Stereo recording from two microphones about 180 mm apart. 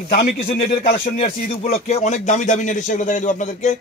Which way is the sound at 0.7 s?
50° left (ahead or behind).